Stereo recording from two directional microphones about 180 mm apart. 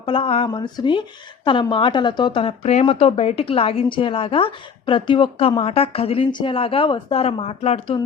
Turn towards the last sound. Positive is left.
turn(degrees=30)  # may be behind; listen again after turning